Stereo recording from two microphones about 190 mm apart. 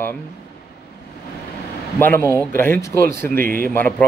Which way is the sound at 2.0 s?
10° left (ahead or behind).